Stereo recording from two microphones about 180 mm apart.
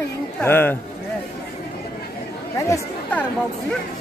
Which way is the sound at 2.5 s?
15° left (ahead or behind).